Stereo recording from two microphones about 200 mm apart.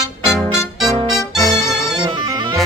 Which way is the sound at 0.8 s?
Centre (ahead or behind).